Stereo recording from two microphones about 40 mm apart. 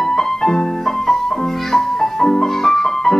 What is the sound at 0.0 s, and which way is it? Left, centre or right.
Music, centre.